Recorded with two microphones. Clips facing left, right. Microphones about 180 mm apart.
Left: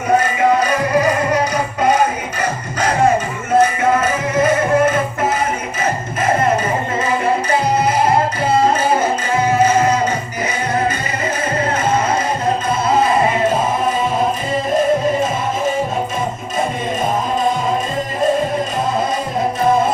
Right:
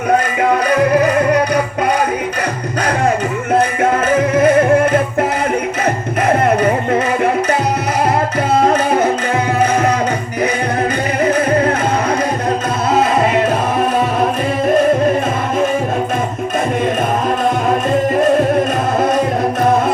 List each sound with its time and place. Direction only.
1.0 s music: 60° right (ahead or behind)
4.1 s music: 60° right (ahead or behind)
8.6 s music: 65° right (ahead or behind)